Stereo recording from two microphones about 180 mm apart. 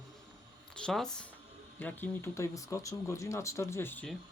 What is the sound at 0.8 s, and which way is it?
Speech, 5° left (ahead or behind).